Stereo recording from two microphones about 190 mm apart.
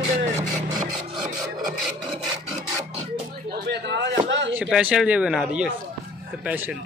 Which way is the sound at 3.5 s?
60° right (ahead or behind).